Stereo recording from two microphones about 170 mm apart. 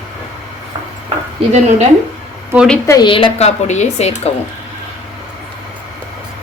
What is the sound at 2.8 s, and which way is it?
A woman's voice, 25° left (ahead or behind).